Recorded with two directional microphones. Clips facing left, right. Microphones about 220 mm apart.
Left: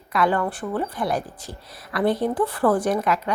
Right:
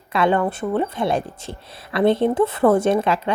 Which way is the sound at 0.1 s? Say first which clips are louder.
Right 3 dB; 25° right (ahead or behind).